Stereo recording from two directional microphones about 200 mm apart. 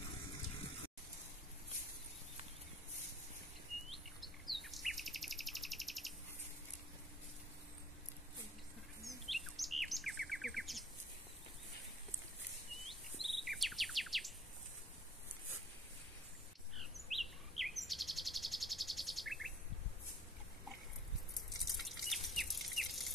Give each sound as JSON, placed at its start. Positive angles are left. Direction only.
{"t": 3.9, "sound": "bird", "side_deg": 0}
{"t": 9.3, "sound": "bird vocalization", "side_deg": 0}
{"t": 12.8, "sound": "bird vocalization", "side_deg": 0}
{"t": 16.7, "sound": "bird vocalization", "side_deg": 0}
{"t": 21.5, "sound": "bird", "side_deg": 0}